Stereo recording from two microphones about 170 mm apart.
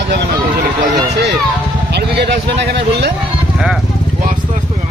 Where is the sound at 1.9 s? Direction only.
75° right (ahead or behind).